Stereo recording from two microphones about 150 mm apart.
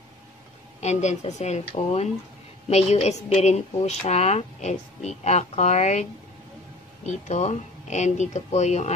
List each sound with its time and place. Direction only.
0.7 s speech: 50° left (ahead or behind)
7.2 s speech: 50° left (ahead or behind)